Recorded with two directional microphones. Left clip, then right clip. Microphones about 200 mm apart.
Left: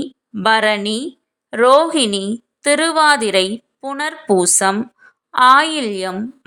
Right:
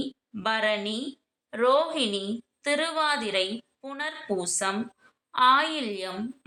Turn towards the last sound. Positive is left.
turn(degrees=45)  # may be behind; listen again after turning